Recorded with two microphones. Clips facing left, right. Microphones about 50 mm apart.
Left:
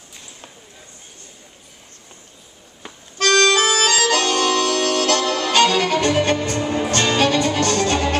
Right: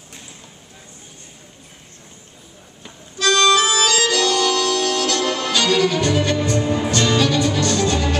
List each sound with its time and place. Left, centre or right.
3.2 s accordion: left
5.3 s music: left